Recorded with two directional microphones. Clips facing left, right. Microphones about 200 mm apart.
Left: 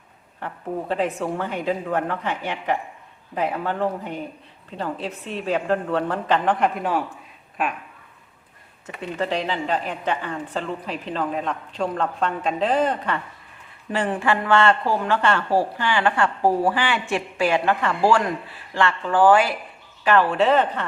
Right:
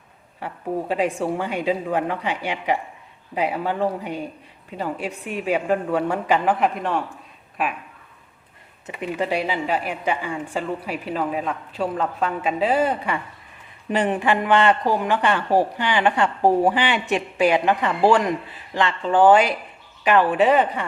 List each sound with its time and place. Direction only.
0.3 s a woman's voice: 10° right (ahead or behind)
9.0 s a woman's voice: 10° right (ahead or behind)